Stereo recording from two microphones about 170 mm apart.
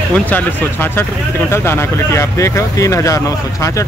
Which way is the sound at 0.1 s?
10° left (ahead or behind).